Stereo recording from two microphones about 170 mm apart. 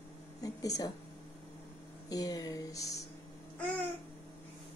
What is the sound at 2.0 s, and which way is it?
Speech, 20° left (ahead or behind).